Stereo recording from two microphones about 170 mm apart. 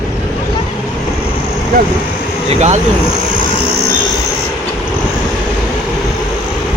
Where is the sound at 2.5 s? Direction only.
40° right (ahead or behind).